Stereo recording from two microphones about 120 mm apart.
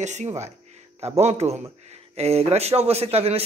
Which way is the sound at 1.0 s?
60° right (ahead or behind).